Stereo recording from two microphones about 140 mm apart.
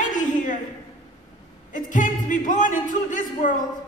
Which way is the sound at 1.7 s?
65° left (ahead or behind).